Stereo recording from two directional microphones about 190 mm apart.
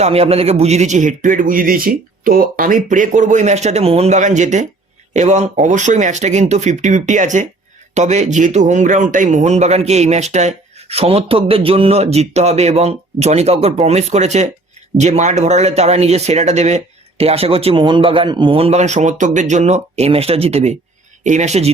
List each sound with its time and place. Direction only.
0.0 s a man's voice: 30° right (ahead or behind)